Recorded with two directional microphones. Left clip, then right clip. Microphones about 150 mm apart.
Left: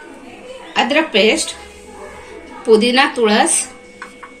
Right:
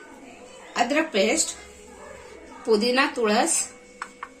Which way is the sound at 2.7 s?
45° right (ahead or behind).